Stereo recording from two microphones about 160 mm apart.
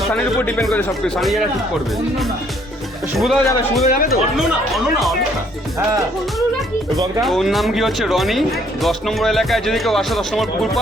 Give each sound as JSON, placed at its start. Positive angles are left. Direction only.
{"t": 0.1, "sound": "speech", "side_deg": 10}
{"t": 3.2, "sound": "speech", "side_deg": 0}
{"t": 3.8, "sound": "speech", "side_deg": 65}
{"t": 4.4, "sound": "speech", "side_deg": 0}
{"t": 7.2, "sound": "speech", "side_deg": 0}